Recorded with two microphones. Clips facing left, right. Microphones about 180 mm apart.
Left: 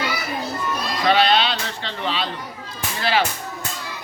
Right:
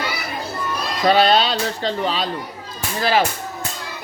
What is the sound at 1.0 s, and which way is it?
Speech, 40° right (ahead or behind).